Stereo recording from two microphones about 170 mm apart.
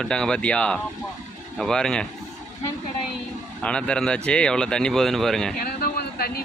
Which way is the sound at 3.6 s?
5° left (ahead or behind).